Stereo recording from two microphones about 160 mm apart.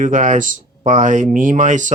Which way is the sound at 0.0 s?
50° right (ahead or behind).